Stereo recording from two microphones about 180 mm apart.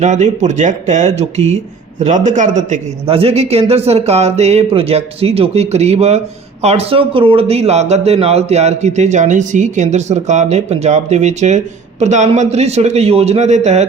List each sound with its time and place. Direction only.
0.0 s speech: 40° right (ahead or behind)